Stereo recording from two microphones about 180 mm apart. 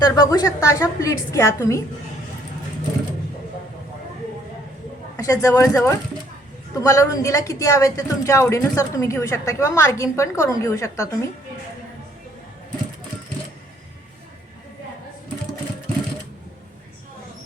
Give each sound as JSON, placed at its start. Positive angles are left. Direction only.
{"t": 0.0, "sound": "speech", "side_deg": 20}
{"t": 5.1, "sound": "speech", "side_deg": 20}